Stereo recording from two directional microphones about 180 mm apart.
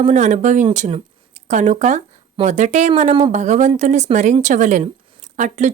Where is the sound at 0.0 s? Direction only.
40° right (ahead or behind).